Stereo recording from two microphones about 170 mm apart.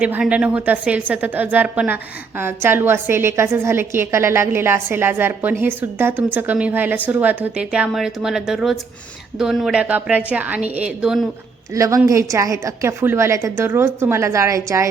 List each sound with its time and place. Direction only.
0.0 s a woman's voice: 5° right (ahead or behind)
11.7 s a woman's voice: 20° right (ahead or behind)